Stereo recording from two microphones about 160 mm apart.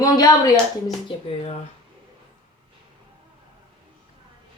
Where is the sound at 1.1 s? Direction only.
40° left (ahead or behind).